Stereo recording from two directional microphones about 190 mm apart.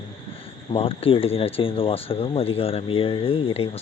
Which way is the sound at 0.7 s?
30° left (ahead or behind).